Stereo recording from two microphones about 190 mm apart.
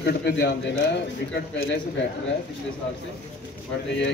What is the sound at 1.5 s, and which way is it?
Speech, 90° left.